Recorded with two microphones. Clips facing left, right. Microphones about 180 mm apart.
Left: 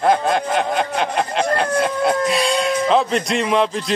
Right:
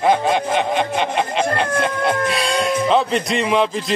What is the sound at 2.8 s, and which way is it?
Music, centre (ahead or behind).